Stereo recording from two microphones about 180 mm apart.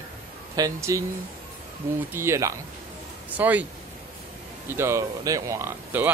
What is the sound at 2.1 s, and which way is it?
Speech, 15° right (ahead or behind).